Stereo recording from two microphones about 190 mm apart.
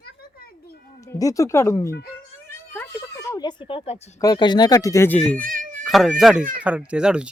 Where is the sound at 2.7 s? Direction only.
15° left (ahead or behind); by 4.2 s 35° left (ahead or behind).